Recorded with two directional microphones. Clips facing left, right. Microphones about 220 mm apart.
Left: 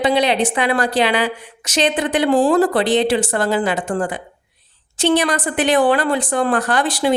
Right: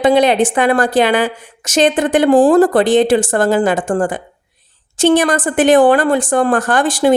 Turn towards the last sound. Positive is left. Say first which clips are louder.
# right 5 dB
turn(degrees=-50)  # may be behind; listen again after turning